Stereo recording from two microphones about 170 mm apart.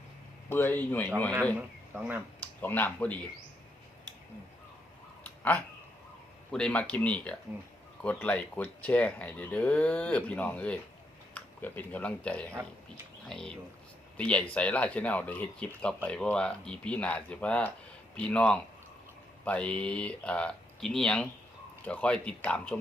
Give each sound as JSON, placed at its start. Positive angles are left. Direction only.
{"t": 0.5, "sound": "speech", "side_deg": 10}
{"t": 1.5, "sound": "speech", "side_deg": -10}
{"t": 2.6, "sound": "speech", "side_deg": 10}
{"t": 5.4, "sound": "a sound", "side_deg": 10}
{"t": 6.5, "sound": "speech", "side_deg": 5}